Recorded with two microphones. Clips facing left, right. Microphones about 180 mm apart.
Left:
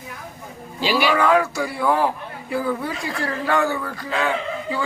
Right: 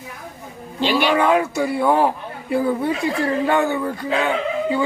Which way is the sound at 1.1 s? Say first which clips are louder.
Right 1 dB; 20° right (ahead or behind).